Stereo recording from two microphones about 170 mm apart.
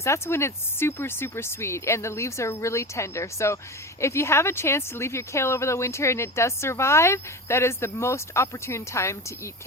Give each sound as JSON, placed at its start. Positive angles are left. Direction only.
{"t": 0.0, "sound": "a woman's voice", "side_deg": 15}